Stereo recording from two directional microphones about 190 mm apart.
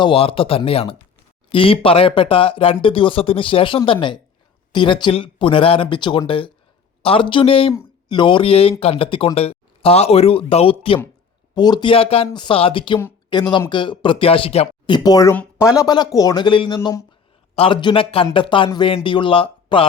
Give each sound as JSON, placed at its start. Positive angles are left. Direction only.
{"t": 0.0, "sound": "speech", "side_deg": 30}